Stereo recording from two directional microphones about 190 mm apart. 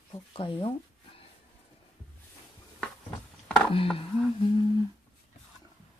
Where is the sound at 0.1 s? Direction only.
25° left (ahead or behind).